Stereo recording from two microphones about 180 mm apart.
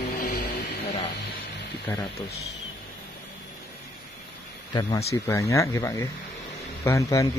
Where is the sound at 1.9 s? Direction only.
15° left (ahead or behind).